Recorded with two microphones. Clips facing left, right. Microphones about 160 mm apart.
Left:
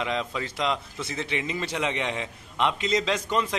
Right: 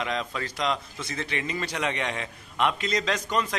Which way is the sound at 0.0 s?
20° left (ahead or behind).